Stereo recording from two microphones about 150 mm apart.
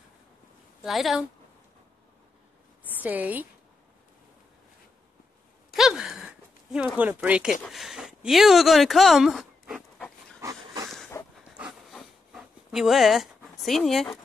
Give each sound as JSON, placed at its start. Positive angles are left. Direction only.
{"t": 0.8, "sound": "speech", "side_deg": 0}
{"t": 3.0, "sound": "speech", "side_deg": -10}
{"t": 5.8, "sound": "a sound", "side_deg": -5}
{"t": 7.0, "sound": "speech", "side_deg": -10}
{"t": 7.6, "sound": "a sound", "side_deg": 0}
{"t": 10.4, "sound": "dog", "side_deg": -20}
{"t": 11.1, "sound": "dog", "side_deg": 15}
{"t": 11.5, "sound": "pant", "side_deg": -5}